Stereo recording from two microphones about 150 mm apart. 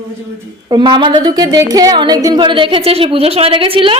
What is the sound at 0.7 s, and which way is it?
A woman's voice, 30° right (ahead or behind).